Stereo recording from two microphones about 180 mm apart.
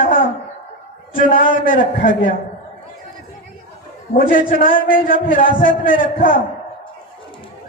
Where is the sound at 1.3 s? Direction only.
50° left (ahead or behind).